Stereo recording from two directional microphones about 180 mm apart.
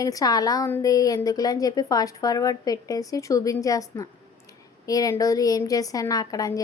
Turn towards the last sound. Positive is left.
turn(degrees=20)  # may be behind; listen again after turning